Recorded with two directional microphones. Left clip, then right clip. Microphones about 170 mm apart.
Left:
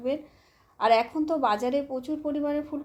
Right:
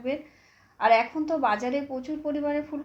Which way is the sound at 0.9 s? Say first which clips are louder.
Right 1 dB; 55° left (ahead or behind).